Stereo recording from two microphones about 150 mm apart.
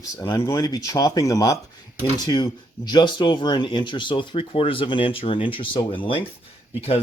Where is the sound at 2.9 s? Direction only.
30° left (ahead or behind).